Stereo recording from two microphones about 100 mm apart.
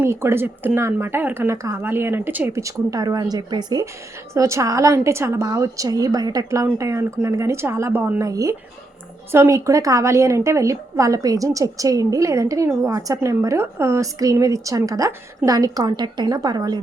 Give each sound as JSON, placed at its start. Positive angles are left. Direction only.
{"t": 0.0, "sound": "speech", "side_deg": -25}
{"t": 4.4, "sound": "a woman's voice", "side_deg": -30}
{"t": 8.2, "sound": "a woman's voice", "side_deg": -35}